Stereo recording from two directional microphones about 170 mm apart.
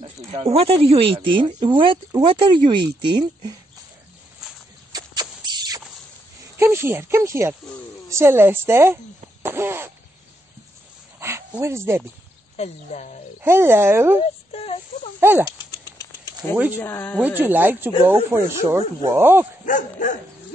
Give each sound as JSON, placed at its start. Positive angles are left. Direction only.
{"t": 0.3, "sound": "speech", "side_deg": -35}
{"t": 4.9, "sound": "shuffle", "side_deg": -25}
{"t": 6.5, "sound": "speech", "side_deg": -15}
{"t": 11.1, "sound": "a sound", "side_deg": -15}
{"t": 12.5, "sound": "speech", "side_deg": 40}
{"t": 13.4, "sound": "speech", "side_deg": -15}
{"t": 14.5, "sound": "speech", "side_deg": 35}
{"t": 15.1, "sound": "speech", "side_deg": -15}
{"t": 16.7, "sound": "speech", "side_deg": 15}
{"t": 17.2, "sound": "speech", "side_deg": -10}
{"t": 19.6, "sound": "speech", "side_deg": 50}